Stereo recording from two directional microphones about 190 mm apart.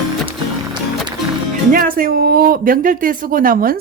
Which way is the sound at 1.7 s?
50° right (ahead or behind).